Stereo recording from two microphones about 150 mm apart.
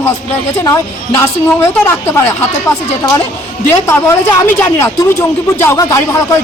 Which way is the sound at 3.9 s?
20° left (ahead or behind).